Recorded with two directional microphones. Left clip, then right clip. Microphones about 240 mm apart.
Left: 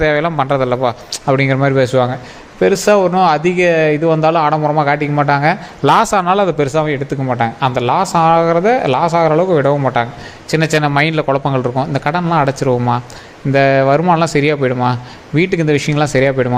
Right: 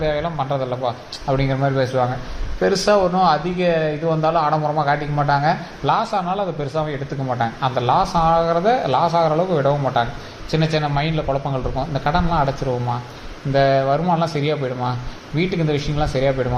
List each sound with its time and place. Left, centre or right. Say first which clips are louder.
0.0 s speech: left 8 dB; left